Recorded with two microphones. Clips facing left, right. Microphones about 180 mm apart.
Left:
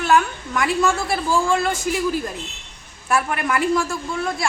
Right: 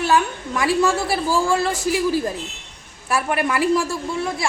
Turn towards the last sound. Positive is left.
turn(degrees=-25)  # may be behind; listen again after turning